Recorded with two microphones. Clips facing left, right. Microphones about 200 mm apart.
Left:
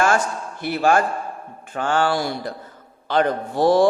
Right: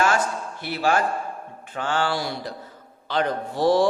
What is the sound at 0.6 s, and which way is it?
A man's voice, 50° left (ahead or behind).